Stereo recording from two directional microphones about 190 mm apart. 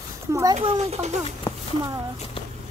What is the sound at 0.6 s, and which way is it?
Speech, 35° right (ahead or behind).